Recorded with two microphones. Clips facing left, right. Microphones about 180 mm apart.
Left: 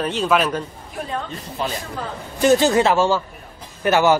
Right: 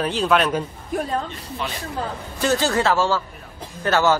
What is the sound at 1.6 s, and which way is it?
Speech, 40° left (ahead or behind).